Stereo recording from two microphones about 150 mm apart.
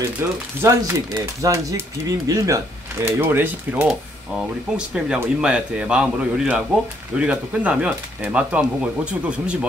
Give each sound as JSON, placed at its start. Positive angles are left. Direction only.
{"t": 0.2, "sound": "speech", "side_deg": -15}